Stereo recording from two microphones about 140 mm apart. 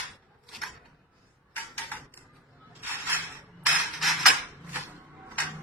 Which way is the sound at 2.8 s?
15° right (ahead or behind).